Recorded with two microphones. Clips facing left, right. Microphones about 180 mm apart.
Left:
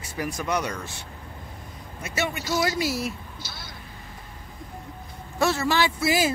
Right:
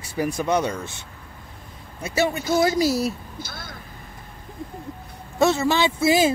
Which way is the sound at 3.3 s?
50° right (ahead or behind).